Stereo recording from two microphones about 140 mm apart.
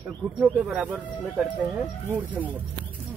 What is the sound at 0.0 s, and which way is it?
Speech, 10° right (ahead or behind).